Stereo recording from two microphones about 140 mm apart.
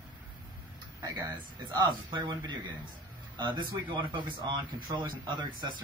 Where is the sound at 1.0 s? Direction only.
30° right (ahead or behind).